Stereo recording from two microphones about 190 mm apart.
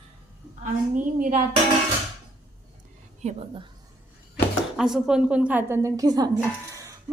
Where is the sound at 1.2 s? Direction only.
45° right (ahead or behind).